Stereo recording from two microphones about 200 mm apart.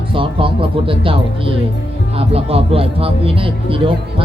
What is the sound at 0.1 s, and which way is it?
Speech, 25° right (ahead or behind).